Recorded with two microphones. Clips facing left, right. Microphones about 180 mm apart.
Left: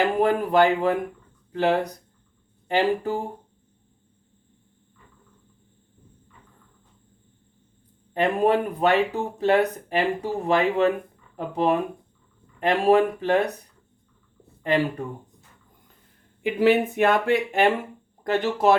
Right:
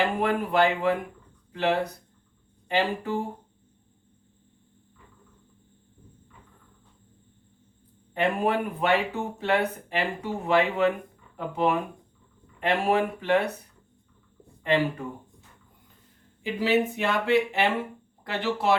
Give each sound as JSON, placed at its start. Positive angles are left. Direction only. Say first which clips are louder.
{"t": 0.2, "sound": "speech", "louder": "left 6 dB", "side_deg": 40}
{"t": 8.1, "sound": "speech", "louder": "left 4 dB", "side_deg": 40}
{"t": 14.6, "sound": "speech", "louder": "left 2 dB", "side_deg": 40}
{"t": 16.4, "sound": "speech", "louder": "left 5 dB", "side_deg": 55}